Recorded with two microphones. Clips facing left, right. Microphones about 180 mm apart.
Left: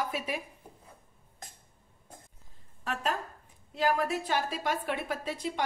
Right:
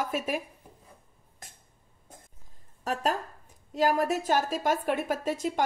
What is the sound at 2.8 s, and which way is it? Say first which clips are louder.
A woman's voice: right 4 dB; 40° right (ahead or behind).